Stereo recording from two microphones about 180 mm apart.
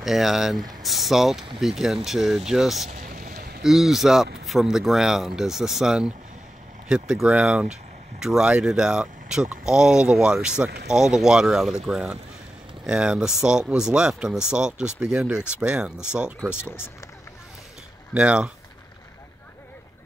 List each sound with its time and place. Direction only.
0.0 s speech: centre (ahead or behind)
2.9 s a sound: 50° right (ahead or behind)
3.6 s speech: centre (ahead or behind)
18.1 s speech: 5° right (ahead or behind)